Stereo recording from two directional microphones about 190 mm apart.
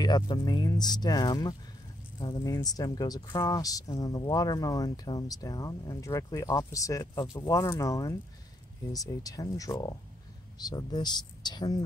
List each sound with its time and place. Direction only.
0.0 s speech: 20° left (ahead or behind)